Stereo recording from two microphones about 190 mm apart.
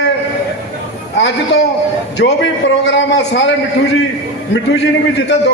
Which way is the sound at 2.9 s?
70° left (ahead or behind).